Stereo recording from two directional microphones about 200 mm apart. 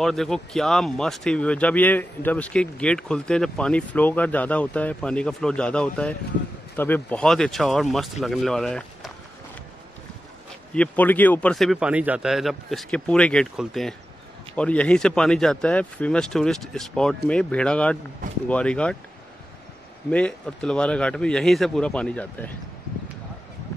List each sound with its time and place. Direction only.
0.0 s speech: centre (ahead or behind)
10.7 s speech: 5° left (ahead or behind)
20.1 s speech: 5° left (ahead or behind)